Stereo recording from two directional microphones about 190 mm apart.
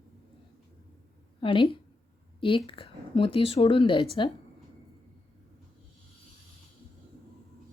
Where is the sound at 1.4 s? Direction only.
25° left (ahead or behind).